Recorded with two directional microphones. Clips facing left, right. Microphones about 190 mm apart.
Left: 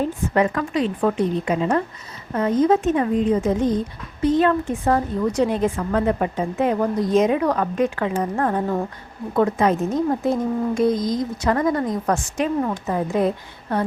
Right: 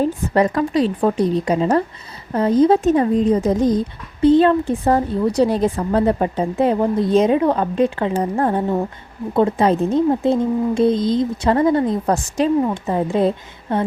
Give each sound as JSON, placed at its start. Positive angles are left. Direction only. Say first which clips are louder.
{"t": 0.0, "sound": "speech", "louder": "right 3 dB", "side_deg": -35}